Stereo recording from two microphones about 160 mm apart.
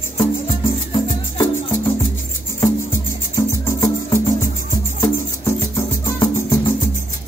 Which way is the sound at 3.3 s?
20° left (ahead or behind).